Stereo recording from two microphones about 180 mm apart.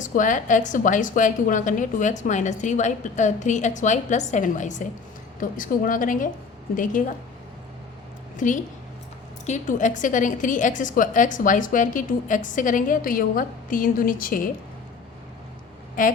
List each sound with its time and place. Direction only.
0.0 s a woman's voice: 45° left (ahead or behind)
8.4 s a woman's voice: 45° left (ahead or behind)
16.0 s a woman's voice: 50° left (ahead or behind)